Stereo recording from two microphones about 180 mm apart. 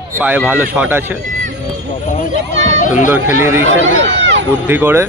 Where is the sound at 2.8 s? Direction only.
45° left (ahead or behind).